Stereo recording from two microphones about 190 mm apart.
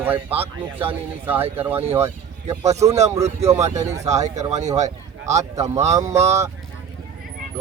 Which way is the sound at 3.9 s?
35° right (ahead or behind).